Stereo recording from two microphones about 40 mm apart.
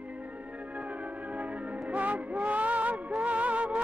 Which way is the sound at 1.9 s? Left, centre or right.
Right.